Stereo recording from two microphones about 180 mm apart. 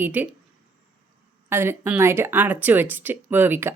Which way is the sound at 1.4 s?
15° right (ahead or behind).